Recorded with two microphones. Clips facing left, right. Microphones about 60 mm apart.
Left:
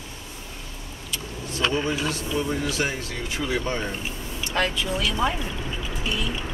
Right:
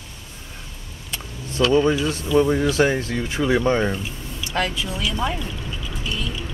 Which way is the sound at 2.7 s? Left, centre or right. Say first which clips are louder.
Right 8 dB; right.